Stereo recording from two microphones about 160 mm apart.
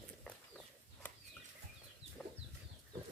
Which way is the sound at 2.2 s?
Centre (ahead or behind).